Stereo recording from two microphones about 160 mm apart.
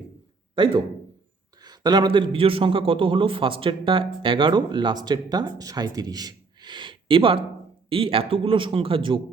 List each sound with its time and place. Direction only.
0.5 s a man's voice: 30° right (ahead or behind)